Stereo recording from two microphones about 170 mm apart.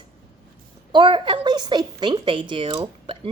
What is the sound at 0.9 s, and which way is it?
A woman's voice, 30° right (ahead or behind).